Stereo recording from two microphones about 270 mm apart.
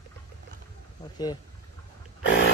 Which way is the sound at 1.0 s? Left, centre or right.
Centre.